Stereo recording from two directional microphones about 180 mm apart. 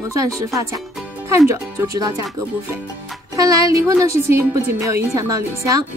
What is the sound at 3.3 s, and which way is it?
A woman's voice, 20° right (ahead or behind).